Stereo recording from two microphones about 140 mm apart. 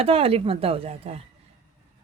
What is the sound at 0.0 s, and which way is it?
Speech, 45° right (ahead or behind).